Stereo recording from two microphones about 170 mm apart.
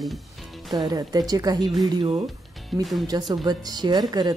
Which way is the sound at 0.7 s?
20° right (ahead or behind).